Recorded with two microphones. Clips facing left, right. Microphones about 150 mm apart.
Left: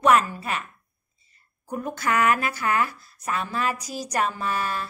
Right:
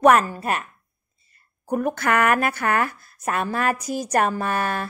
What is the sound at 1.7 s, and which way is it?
A woman's voice, 60° right (ahead or behind).